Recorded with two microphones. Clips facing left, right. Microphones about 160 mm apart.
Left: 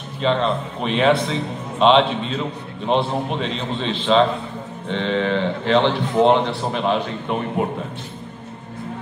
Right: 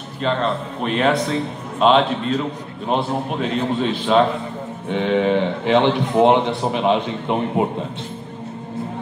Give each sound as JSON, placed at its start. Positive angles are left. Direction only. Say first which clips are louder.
{"t": 0.2, "sound": "a man's voice", "louder": "left 1 dB", "side_deg": 0}